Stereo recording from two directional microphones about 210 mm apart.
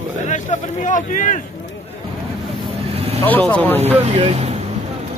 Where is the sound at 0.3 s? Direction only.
35° left (ahead or behind).